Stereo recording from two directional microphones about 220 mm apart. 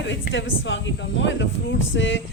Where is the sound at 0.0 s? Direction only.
55° left (ahead or behind).